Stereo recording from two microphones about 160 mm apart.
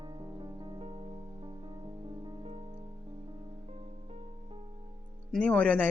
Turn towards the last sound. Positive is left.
turn(degrees=10)  # may be behind; listen again after turning